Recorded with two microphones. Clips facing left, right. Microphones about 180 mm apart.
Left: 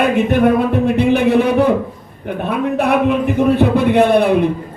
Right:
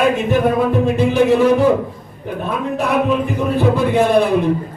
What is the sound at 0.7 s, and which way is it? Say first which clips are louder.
Speech: left 2 dB; 60° left (ahead or behind).